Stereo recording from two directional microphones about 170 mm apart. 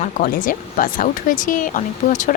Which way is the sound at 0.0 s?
55° left (ahead or behind).